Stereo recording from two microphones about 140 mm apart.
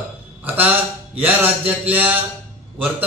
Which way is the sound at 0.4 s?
10° right (ahead or behind).